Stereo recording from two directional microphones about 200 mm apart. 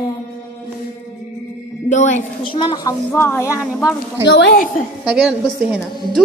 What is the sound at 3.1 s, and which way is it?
Speech, 10° left (ahead or behind).